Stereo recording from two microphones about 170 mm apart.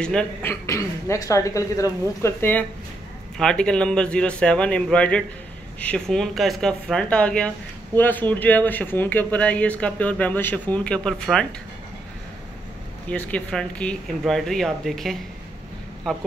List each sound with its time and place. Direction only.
0.0 s speech: 5° left (ahead or behind)
13.3 s speech: 5° left (ahead or behind)